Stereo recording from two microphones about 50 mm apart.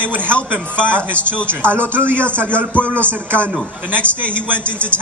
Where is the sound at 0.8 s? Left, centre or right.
Right.